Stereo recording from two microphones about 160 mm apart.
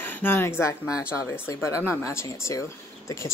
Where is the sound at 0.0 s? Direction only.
10° left (ahead or behind).